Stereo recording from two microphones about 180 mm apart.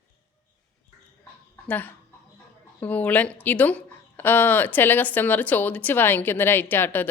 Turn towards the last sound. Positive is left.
turn(degrees=10)  # may be behind; listen again after turning